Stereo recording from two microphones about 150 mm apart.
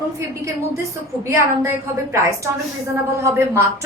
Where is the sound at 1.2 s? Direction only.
20° right (ahead or behind).